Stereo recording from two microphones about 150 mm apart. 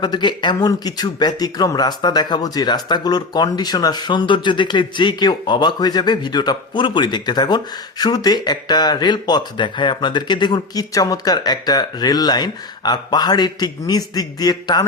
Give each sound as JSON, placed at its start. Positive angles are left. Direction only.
{"t": 0.0, "sound": "a man's voice", "side_deg": 30}